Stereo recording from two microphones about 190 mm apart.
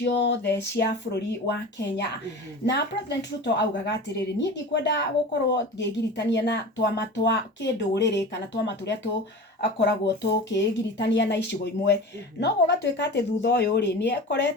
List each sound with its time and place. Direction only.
0.0 s speech: 70° left (ahead or behind)